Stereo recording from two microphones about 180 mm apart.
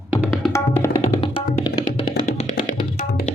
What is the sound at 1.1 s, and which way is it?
Music, 30° left (ahead or behind).